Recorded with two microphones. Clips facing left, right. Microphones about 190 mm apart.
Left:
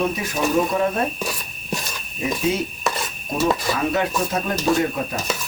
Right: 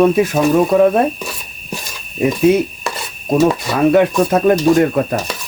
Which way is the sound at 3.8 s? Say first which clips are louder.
Right 10 dB; 60° right (ahead or behind).